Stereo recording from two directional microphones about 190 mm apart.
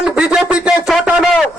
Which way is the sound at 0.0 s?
5° right (ahead or behind).